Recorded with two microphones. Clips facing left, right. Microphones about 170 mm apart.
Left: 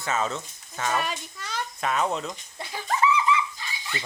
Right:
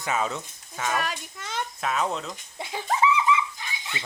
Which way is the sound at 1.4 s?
20° right (ahead or behind).